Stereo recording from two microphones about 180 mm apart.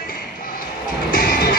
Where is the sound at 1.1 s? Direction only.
50° left (ahead or behind).